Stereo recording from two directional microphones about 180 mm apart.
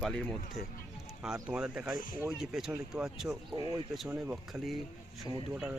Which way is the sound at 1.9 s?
20° right (ahead or behind).